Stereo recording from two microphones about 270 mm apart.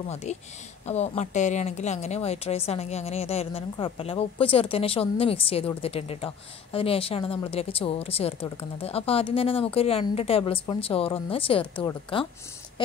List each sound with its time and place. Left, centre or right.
0.1 s a woman's voice: left